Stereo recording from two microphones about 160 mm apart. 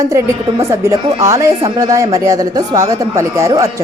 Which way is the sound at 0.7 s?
20° right (ahead or behind).